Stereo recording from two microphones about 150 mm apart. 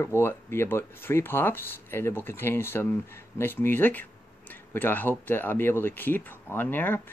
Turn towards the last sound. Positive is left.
turn(degrees=15)  # may be behind; listen again after turning